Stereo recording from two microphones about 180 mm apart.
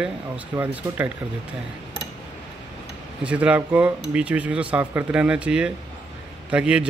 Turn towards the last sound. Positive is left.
turn(degrees=-5)  # may be behind; listen again after turning